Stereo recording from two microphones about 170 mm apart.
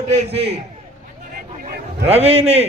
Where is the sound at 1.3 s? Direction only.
60° right (ahead or behind).